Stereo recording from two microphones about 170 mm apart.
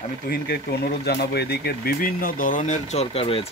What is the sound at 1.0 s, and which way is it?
Speech, 70° left (ahead or behind).